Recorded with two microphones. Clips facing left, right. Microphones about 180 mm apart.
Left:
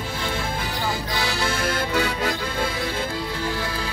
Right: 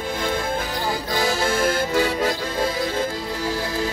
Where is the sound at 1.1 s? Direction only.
45° right (ahead or behind).